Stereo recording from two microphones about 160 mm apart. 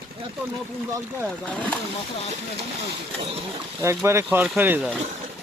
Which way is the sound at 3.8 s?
15° right (ahead or behind).